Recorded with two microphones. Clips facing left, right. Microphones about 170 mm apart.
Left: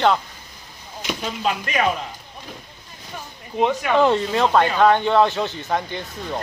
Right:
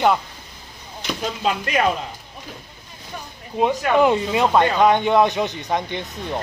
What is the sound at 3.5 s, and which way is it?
Speech, 10° right (ahead or behind).